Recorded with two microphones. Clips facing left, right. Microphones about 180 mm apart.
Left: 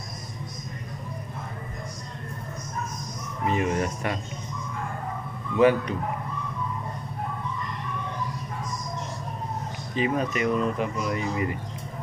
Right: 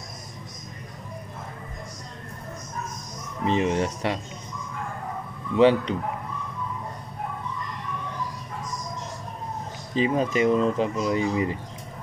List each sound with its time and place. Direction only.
3.4 s speech: 25° right (ahead or behind)
5.6 s speech: 20° right (ahead or behind)
9.9 s speech: 30° right (ahead or behind)